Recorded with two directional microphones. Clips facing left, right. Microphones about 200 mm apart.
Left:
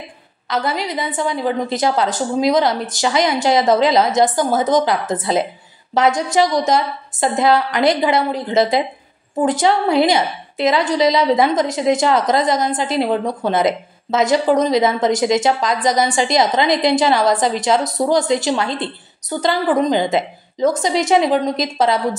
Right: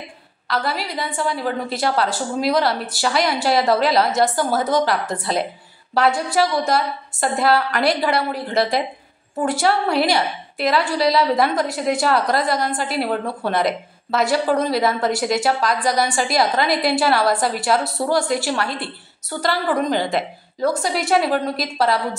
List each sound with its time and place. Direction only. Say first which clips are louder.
0.5 s a woman's voice: left 3 dB; 20° left (ahead or behind)